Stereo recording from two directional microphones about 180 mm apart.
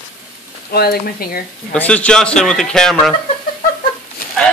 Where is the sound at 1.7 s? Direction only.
5° left (ahead or behind).